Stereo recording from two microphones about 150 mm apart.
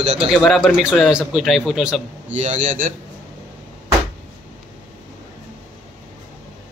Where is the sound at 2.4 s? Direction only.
55° right (ahead or behind).